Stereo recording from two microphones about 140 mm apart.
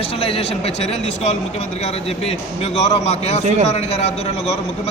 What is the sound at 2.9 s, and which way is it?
A man's voice, 50° left (ahead or behind).